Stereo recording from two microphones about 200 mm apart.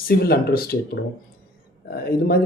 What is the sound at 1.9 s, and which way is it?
Speech, 50° left (ahead or behind).